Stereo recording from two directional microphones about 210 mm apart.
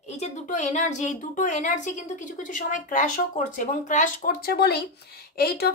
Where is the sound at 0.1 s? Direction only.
35° left (ahead or behind).